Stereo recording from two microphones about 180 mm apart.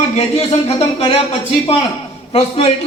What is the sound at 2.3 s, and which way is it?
Speech, 35° left (ahead or behind).